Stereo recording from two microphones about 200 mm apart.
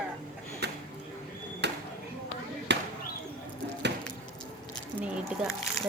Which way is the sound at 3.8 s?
60° right (ahead or behind).